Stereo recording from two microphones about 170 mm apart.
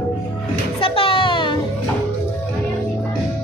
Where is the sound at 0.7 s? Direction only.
30° left (ahead or behind).